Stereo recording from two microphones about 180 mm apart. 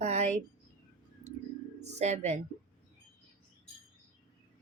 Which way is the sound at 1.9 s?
40° right (ahead or behind).